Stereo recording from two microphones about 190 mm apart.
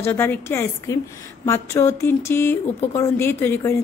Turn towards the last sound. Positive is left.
turn(degrees=10)  # may be behind; listen again after turning